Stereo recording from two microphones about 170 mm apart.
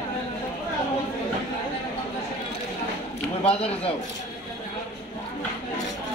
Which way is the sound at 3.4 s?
35° left (ahead or behind).